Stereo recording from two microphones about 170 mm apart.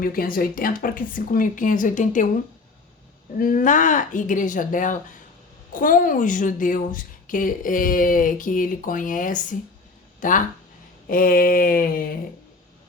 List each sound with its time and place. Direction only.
0.0 s speech: 60° left (ahead or behind)
3.3 s a woman's voice: 55° left (ahead or behind)